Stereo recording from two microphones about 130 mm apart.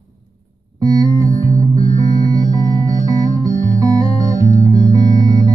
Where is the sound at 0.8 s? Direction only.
30° right (ahead or behind).